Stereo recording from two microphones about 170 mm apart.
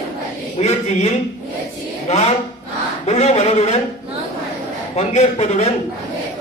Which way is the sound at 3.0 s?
40° left (ahead or behind).